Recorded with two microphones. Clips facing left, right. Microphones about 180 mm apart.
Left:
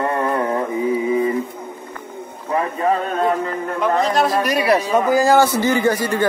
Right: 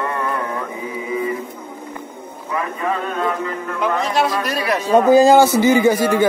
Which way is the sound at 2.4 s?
35° left (ahead or behind).